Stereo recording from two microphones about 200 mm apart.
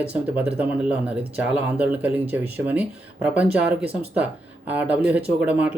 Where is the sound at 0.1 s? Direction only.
5° right (ahead or behind).